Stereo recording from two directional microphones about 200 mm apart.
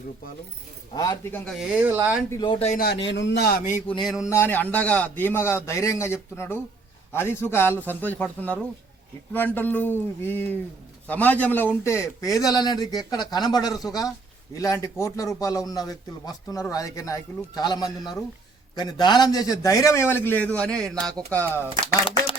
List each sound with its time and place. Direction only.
0.9 s speech: 15° left (ahead or behind)
1.5 s speech: 5° right (ahead or behind)
2.3 s a man's voice: 25° left (ahead or behind)
2.7 s speech: 55° left (ahead or behind)
3.8 s a man's voice: 20° left (ahead or behind)
4.3 s a man's voice: 10° left (ahead or behind)